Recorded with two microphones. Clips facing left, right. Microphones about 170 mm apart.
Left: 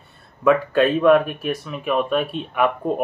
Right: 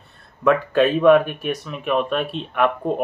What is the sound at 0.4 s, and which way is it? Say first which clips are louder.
Speech: even; centre (ahead or behind).